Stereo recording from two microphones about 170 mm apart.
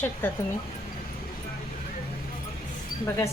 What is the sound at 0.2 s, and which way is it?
Speech, 10° left (ahead or behind).